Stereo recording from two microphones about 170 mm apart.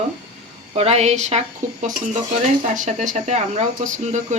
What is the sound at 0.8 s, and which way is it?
Speech, 40° right (ahead or behind).